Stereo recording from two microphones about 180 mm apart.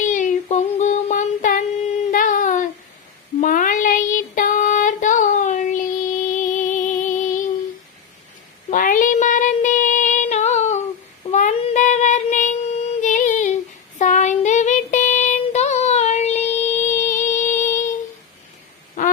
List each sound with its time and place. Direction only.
0.0 s child singing: 45° left (ahead or behind)
2.0 s a sound: 45° left (ahead or behind)
3.4 s child singing: 50° left (ahead or behind)
6.3 s music: 45° left (ahead or behind)
8.7 s female singing: 50° left (ahead or behind)
11.3 s child singing: 40° left (ahead or behind)